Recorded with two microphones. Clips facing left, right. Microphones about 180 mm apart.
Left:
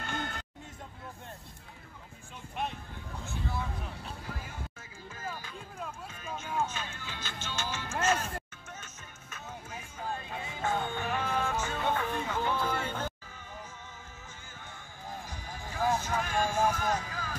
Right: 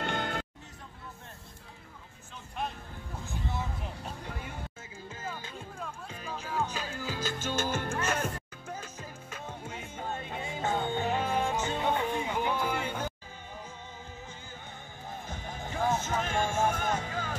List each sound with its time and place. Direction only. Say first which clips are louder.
0.0 s music: right 5 dB; 65° right (ahead or behind)
6.0 s music: right 1 dB; 30° right (ahead or behind); by 8.3 s 60° right (ahead or behind)
8.6 s music: right 7 dB; 30° right (ahead or behind); by 13.1 s 10° right (ahead or behind)
15.2 s music: right 3 dB; 25° right (ahead or behind)